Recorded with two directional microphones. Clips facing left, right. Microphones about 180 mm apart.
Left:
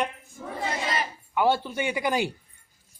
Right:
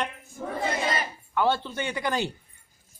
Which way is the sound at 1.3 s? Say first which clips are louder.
Left 2 dB; 10° left (ahead or behind).